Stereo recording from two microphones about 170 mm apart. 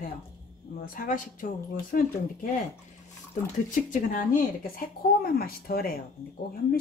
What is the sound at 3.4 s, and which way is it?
Speech, 50° left (ahead or behind).